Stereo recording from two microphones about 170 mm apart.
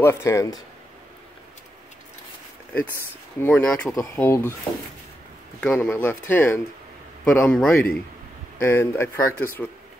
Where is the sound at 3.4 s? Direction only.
10° left (ahead or behind).